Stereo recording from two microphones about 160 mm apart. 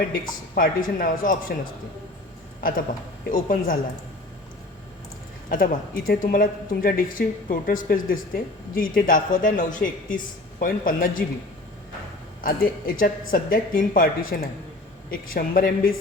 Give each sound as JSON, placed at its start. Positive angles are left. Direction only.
{"t": 0.1, "sound": "speech", "side_deg": 65}
{"t": 3.3, "sound": "speech", "side_deg": 60}
{"t": 5.5, "sound": "speech", "side_deg": 60}
{"t": 12.4, "sound": "speech", "side_deg": 65}